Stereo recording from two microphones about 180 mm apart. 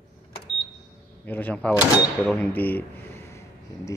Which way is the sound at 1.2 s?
10° left (ahead or behind).